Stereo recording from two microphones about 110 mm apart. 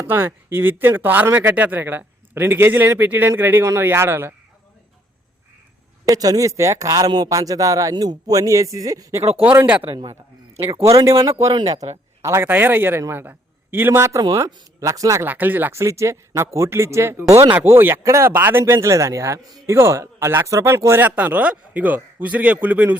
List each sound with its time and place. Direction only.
0.0 s speech: 20° right (ahead or behind)
6.1 s speech: 35° right (ahead or behind)
9.4 s speech: 15° right (ahead or behind)
10.8 s speech: 30° right (ahead or behind)
11.6 s speech: 85° right
12.2 s speech: 25° right (ahead or behind)
15.3 s speech: 15° right (ahead or behind)
17.5 s speech: 20° right (ahead or behind)